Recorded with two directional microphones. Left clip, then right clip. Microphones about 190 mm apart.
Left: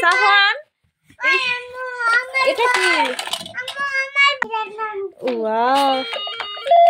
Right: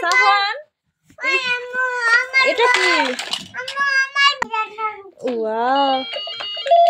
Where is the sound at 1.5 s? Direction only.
55° right (ahead or behind).